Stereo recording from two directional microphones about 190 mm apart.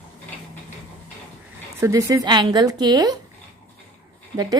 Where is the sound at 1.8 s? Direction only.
15° right (ahead or behind).